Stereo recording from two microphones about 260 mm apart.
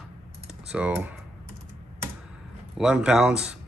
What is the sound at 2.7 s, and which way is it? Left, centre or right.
Speech, centre.